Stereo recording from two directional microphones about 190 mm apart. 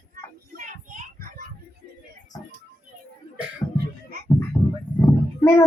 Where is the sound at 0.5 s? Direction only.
45° right (ahead or behind).